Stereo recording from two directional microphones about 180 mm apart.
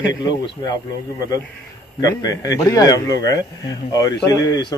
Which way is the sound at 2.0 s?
20° left (ahead or behind).